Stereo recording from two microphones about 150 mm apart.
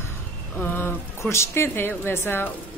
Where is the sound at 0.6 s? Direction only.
15° left (ahead or behind).